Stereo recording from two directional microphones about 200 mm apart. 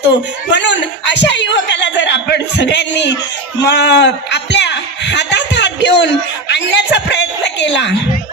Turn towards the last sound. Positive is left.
turn(degrees=60)  # may be behind; listen again after turning